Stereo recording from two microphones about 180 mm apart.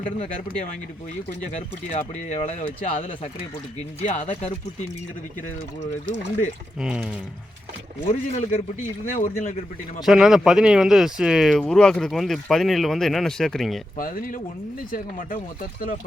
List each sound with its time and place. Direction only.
0.0 s speech: 45° left (ahead or behind)
1.9 s speech: 40° left (ahead or behind)
6.7 s speech: 5° right (ahead or behind)
8.0 s speech: 40° left (ahead or behind)
10.1 s speech: centre (ahead or behind)
13.9 s speech: 50° left (ahead or behind)